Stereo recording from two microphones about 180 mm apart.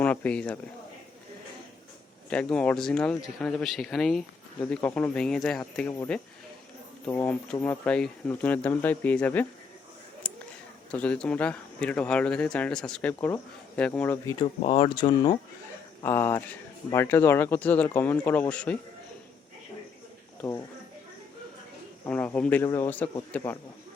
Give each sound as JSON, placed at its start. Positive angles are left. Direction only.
{"t": 0.0, "sound": "speech", "side_deg": 10}
{"t": 2.3, "sound": "speech", "side_deg": 5}
{"t": 10.3, "sound": "a sound", "side_deg": 10}
{"t": 10.9, "sound": "speech", "side_deg": 5}
{"t": 14.3, "sound": "speech", "side_deg": 25}
{"t": 16.0, "sound": "speech", "side_deg": 15}
{"t": 20.4, "sound": "speech", "side_deg": 15}
{"t": 22.0, "sound": "speech", "side_deg": 10}